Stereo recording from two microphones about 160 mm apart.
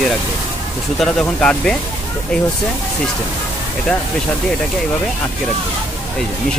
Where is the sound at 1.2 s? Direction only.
5° left (ahead or behind).